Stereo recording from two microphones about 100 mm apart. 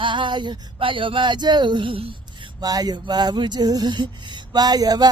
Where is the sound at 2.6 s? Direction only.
40° right (ahead or behind).